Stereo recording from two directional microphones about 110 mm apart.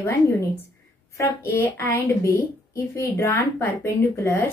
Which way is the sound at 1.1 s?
20° left (ahead or behind).